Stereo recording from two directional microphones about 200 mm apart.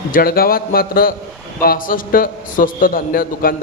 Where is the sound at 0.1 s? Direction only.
45° left (ahead or behind).